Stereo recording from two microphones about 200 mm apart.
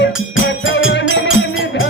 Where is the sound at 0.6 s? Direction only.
60° left (ahead or behind).